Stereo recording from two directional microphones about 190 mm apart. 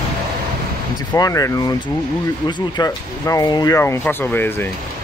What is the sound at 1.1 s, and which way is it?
Speech, 20° left (ahead or behind).